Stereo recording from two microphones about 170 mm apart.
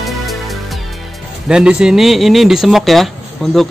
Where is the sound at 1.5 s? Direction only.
5° right (ahead or behind).